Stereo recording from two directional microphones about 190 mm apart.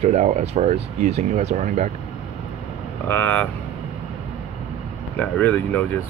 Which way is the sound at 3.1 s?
10° left (ahead or behind).